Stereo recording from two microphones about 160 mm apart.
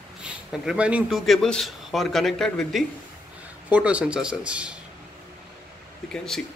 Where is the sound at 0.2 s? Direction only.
5° right (ahead or behind).